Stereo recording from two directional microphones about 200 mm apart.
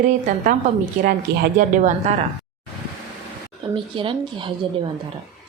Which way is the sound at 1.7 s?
40° right (ahead or behind).